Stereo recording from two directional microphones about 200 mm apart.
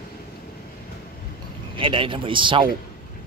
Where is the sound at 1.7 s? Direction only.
25° right (ahead or behind).